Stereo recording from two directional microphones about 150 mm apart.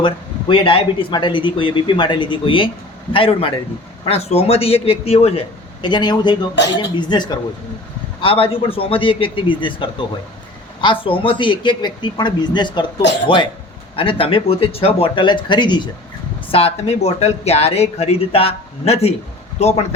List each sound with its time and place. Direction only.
0.0 s speech: 35° left (ahead or behind)